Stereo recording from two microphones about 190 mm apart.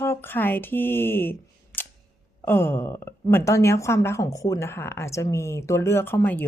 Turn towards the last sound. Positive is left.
turn(degrees=10)  # may be behind; listen again after turning